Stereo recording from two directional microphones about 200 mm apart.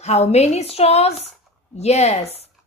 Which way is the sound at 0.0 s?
30° left (ahead or behind).